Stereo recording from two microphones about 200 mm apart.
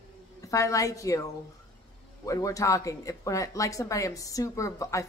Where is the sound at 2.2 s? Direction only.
15° left (ahead or behind).